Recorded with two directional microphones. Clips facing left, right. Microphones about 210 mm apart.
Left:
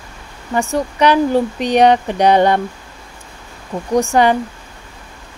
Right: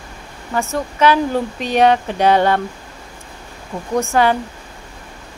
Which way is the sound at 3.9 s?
15° left (ahead or behind).